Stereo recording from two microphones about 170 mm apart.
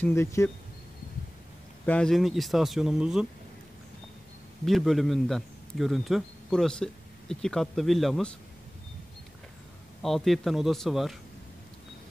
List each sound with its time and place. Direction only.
0.0 s speech: 15° left (ahead or behind)
1.9 s speech: 5° left (ahead or behind)
4.6 s speech: centre (ahead or behind)
10.0 s speech: centre (ahead or behind)